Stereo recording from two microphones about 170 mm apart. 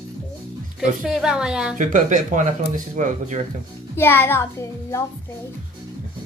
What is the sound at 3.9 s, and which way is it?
A child's voice, 15° left (ahead or behind).